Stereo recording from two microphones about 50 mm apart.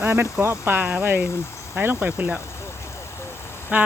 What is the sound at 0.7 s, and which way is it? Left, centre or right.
Speech, right.